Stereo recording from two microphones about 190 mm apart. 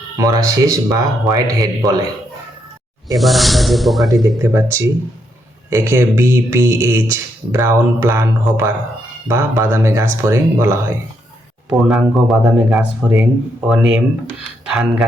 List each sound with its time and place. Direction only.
0.2 s speech: 20° right (ahead or behind)
3.2 s speech: centre (ahead or behind)
4.4 s speech: 15° right (ahead or behind)
11.7 s speech: 5° right (ahead or behind)